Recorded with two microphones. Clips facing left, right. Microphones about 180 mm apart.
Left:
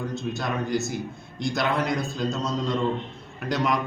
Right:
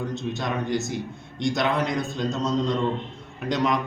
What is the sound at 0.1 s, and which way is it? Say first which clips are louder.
A man's voice: right 1 dB; 5° left (ahead or behind).